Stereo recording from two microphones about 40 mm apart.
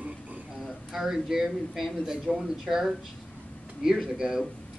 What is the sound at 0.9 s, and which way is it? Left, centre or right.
Speech, centre.